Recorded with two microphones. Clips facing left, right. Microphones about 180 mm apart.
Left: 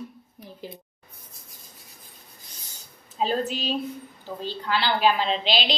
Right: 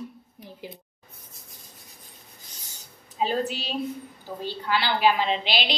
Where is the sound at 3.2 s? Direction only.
40° left (ahead or behind).